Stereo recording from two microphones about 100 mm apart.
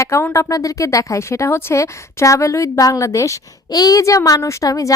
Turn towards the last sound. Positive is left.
turn(degrees=35)  # may be behind; listen again after turning